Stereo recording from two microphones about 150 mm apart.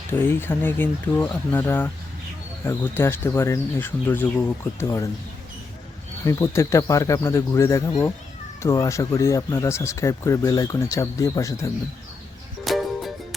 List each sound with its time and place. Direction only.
0.1 s speech: 15° left (ahead or behind)
6.2 s speech: 20° left (ahead or behind)
12.6 s music: centre (ahead or behind)